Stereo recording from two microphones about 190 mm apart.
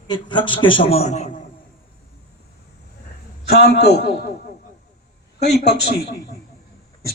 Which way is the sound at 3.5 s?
60° left (ahead or behind).